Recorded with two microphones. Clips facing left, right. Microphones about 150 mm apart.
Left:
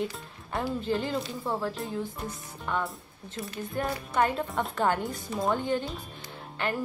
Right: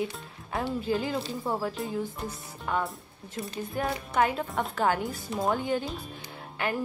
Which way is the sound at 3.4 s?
25° right (ahead or behind).